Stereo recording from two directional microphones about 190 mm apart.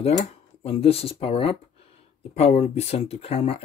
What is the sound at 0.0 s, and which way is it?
Speech, 30° left (ahead or behind).